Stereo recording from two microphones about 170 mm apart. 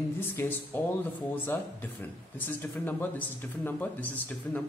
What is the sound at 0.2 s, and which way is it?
Speech, 15° left (ahead or behind).